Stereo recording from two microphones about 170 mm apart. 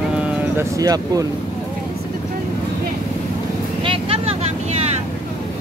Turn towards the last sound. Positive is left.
turn(degrees=-35)  # may be behind; listen again after turning